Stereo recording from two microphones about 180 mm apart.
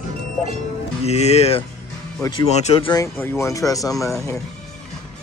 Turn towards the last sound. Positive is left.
turn(degrees=15)  # may be behind; listen again after turning